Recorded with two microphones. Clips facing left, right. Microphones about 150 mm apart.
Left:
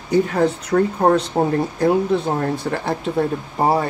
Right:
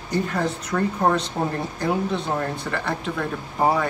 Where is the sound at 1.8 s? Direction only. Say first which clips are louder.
Left 6 dB; 45° left (ahead or behind).